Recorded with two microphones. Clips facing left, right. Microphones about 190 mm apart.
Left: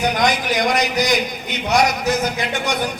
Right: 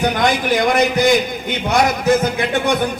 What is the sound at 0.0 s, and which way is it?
A man's voice, 55° right (ahead or behind).